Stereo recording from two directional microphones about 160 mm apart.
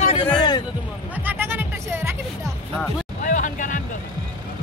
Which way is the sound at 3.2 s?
50° left (ahead or behind).